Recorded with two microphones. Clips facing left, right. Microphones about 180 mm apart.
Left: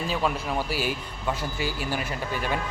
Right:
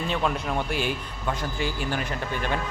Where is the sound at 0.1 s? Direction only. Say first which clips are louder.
Right 1 dB; 5° left (ahead or behind).